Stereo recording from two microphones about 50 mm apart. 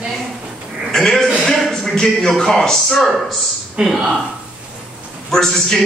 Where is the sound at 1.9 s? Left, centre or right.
Centre.